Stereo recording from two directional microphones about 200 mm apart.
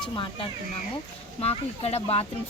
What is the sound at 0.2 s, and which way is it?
Speech, 25° left (ahead or behind).